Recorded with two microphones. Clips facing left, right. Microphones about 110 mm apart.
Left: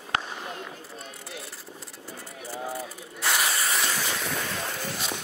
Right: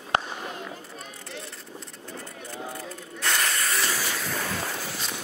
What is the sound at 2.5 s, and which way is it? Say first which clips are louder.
Hiss: left 3 dB; 5° left (ahead or behind).